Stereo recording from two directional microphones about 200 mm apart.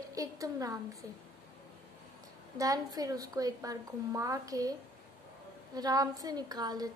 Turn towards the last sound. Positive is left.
turn(degrees=-20)  # may be behind; listen again after turning